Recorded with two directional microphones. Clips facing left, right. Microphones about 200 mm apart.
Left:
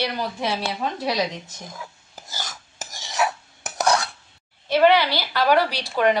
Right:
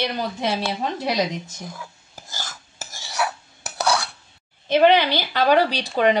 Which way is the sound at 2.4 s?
15° left (ahead or behind).